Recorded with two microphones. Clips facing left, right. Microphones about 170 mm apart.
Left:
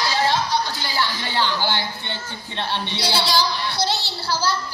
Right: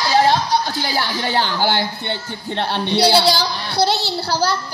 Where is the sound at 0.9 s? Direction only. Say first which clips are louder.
Right 3 dB; 45° right (ahead or behind).